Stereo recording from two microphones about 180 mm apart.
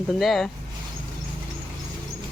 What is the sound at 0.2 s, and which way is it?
Speech, centre (ahead or behind).